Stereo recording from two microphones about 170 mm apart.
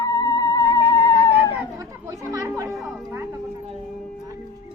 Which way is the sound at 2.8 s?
Centre (ahead or behind).